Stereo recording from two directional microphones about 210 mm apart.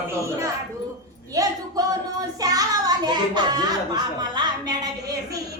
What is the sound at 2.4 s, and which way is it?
Music, 15° right (ahead or behind).